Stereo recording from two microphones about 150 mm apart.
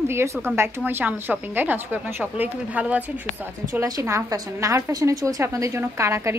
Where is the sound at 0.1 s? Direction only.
15° right (ahead or behind).